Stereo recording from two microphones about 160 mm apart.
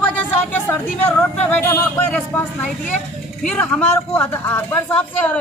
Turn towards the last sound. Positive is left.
turn(degrees=10)  # may be behind; listen again after turning